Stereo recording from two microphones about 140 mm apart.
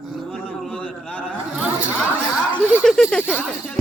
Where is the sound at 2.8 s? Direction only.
Centre (ahead or behind).